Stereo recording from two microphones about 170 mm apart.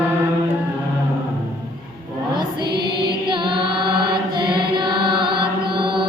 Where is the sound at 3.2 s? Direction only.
30° right (ahead or behind).